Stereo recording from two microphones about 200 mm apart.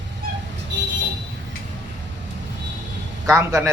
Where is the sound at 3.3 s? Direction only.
15° right (ahead or behind).